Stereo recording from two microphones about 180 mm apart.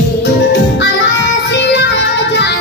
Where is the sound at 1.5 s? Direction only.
70° left (ahead or behind).